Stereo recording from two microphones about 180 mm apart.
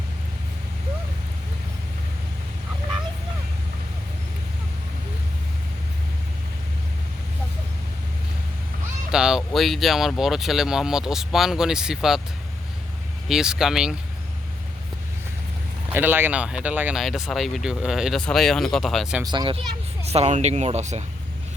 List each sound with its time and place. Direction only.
9.1 s speech: 5° right (ahead or behind)
13.2 s speech: 5° right (ahead or behind)
15.9 s speech: 10° right (ahead or behind)
19.2 s speech: 25° right (ahead or behind)